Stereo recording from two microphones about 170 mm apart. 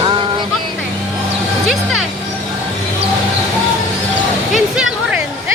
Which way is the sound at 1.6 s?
Centre (ahead or behind).